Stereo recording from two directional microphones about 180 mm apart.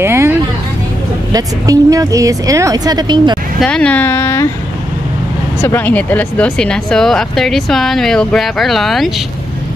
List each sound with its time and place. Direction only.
0.0 s music: 15° right (ahead or behind)
1.3 s a woman's voice: 20° right (ahead or behind)
3.5 s speech: 5° left (ahead or behind)
5.6 s speech: 10° left (ahead or behind)